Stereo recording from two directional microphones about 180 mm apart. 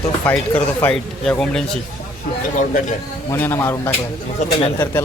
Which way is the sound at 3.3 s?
10° left (ahead or behind).